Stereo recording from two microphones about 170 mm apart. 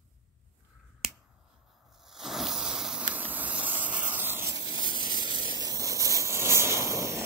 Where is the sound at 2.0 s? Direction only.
Centre (ahead or behind).